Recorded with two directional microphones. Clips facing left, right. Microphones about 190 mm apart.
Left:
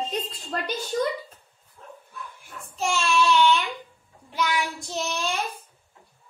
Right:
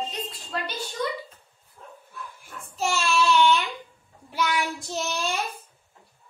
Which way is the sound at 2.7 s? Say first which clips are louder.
Left 1 dB; 5° right (ahead or behind).